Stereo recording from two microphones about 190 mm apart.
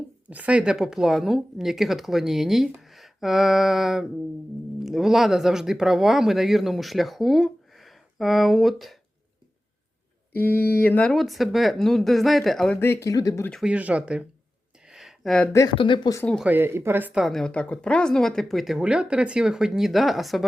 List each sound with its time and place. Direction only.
0.3 s speech: 5° right (ahead or behind)
10.3 s mantra: 10° left (ahead or behind)
10.7 s speech: 10° left (ahead or behind)
13.5 s speech: 5° right (ahead or behind)
14.8 s a sound: centre (ahead or behind)
15.5 s speech: 25° left (ahead or behind)
16.2 s speech: 5° left (ahead or behind)
16.5 s speech: 10° right (ahead or behind)